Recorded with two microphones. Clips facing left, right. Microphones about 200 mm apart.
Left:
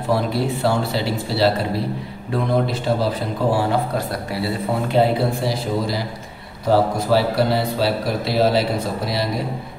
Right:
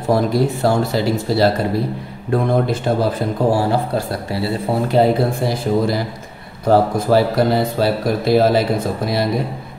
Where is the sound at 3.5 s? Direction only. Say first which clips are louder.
Right 2 dB; 35° right (ahead or behind).